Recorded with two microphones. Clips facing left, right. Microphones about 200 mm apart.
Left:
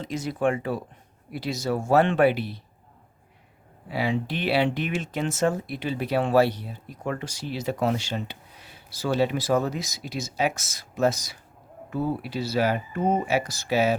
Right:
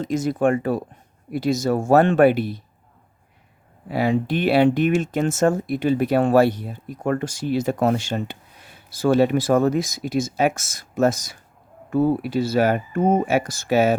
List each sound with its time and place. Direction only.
0.0 s speech: 45° right (ahead or behind)
3.8 s speech: 50° right (ahead or behind)